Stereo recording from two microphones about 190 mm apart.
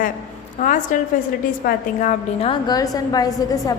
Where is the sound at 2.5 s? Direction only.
20° left (ahead or behind).